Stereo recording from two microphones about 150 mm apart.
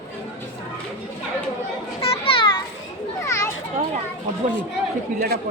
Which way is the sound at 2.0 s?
40° left (ahead or behind).